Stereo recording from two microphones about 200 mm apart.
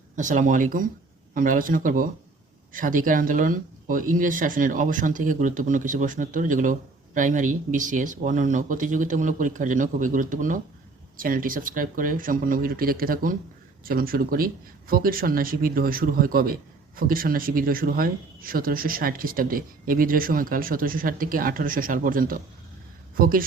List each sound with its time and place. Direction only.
0.2 s speech: 40° right (ahead or behind)